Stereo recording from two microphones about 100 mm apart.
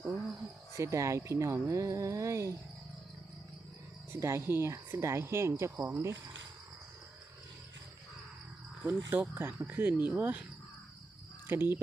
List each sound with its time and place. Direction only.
0.7 s speech: 30° right (ahead or behind)
4.1 s speech: 30° right (ahead or behind)
8.8 s speech: 15° right (ahead or behind)
11.4 s speech: 25° right (ahead or behind)